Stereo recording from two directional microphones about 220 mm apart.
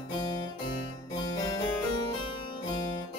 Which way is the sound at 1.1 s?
15° left (ahead or behind).